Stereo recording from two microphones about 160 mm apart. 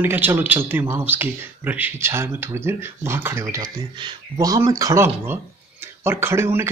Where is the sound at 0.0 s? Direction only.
10° right (ahead or behind).